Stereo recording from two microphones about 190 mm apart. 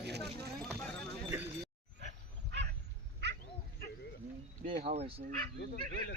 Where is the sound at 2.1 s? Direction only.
65° right (ahead or behind).